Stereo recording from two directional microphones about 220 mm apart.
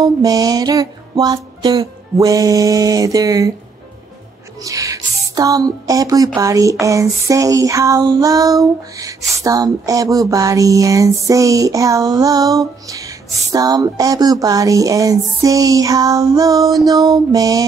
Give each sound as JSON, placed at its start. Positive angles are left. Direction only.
{"t": 0.0, "sound": "speech", "side_deg": -15}
{"t": 4.6, "sound": "speech", "side_deg": -15}